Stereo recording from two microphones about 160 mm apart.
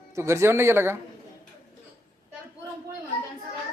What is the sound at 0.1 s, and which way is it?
Speech, 15° right (ahead or behind).